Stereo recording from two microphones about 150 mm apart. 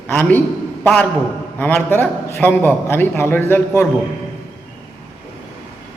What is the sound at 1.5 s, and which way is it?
A man's voice, 10° left (ahead or behind).